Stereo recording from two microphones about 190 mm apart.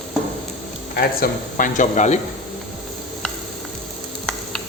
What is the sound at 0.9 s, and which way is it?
Speech, 50° left (ahead or behind).